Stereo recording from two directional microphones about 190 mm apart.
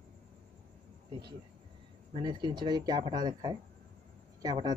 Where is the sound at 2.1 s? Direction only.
25° right (ahead or behind).